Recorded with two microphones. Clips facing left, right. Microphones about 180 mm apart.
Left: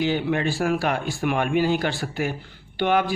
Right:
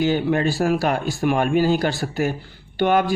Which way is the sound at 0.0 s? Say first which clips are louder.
Right 3 dB; 45° right (ahead or behind).